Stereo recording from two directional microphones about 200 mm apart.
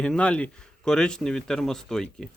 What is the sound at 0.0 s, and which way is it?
Speech, 5° left (ahead or behind).